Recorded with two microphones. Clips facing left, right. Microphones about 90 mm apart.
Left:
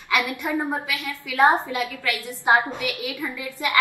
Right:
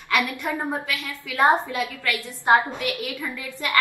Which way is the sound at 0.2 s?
20° left (ahead or behind).